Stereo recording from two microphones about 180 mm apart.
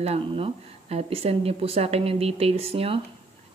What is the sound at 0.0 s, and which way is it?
Speech, 35° right (ahead or behind).